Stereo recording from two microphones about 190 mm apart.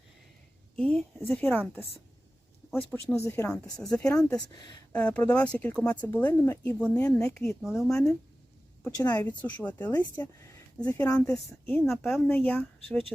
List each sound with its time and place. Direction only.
0.8 s speech: 5° left (ahead or behind)
2.9 s speech: 10° left (ahead or behind)
3.5 s speech: 5° left (ahead or behind)
9.0 s a woman's voice: 20° left (ahead or behind)
9.4 s speech: 10° left (ahead or behind)